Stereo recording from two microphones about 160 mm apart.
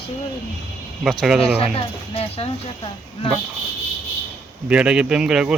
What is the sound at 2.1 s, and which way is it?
Speech, 40° left (ahead or behind).